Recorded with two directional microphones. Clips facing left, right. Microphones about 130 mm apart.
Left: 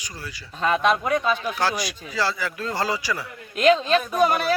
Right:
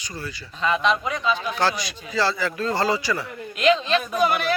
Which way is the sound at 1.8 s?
10° left (ahead or behind).